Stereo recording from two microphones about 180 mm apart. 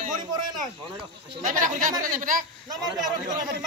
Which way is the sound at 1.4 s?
45° right (ahead or behind).